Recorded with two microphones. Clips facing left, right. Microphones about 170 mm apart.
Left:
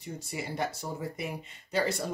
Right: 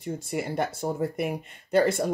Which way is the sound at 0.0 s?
55° right (ahead or behind).